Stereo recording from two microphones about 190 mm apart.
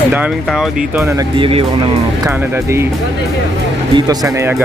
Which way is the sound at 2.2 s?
15° right (ahead or behind).